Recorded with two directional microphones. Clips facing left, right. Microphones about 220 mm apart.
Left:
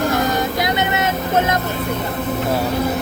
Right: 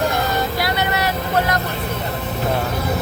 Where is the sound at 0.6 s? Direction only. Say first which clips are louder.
Left 2 dB; 20° left (ahead or behind).